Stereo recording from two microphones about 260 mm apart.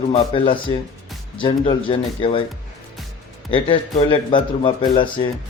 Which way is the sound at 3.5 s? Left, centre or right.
Centre.